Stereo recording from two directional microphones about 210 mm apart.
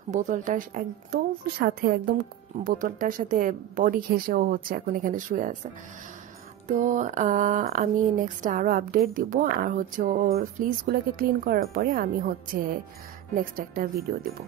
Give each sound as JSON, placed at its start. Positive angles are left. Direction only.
{"t": 0.1, "sound": "a woman's voice", "side_deg": -35}
{"t": 6.7, "sound": "a woman's voice", "side_deg": -35}
{"t": 13.3, "sound": "a woman's voice", "side_deg": -40}